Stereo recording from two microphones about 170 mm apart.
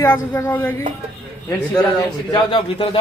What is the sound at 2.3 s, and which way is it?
Speech, 30° left (ahead or behind).